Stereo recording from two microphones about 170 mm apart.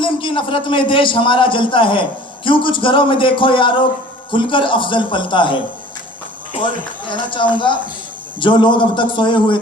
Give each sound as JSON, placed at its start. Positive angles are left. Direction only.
{"t": 0.0, "sound": "a man's voice", "side_deg": 30}
{"t": 7.1, "sound": "a man's voice", "side_deg": 30}